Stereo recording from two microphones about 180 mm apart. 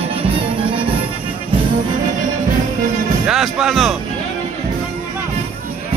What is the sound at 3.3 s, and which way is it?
Music, centre (ahead or behind).